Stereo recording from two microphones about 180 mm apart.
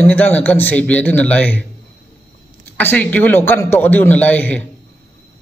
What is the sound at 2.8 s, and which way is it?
A man's voice, 10° left (ahead or behind).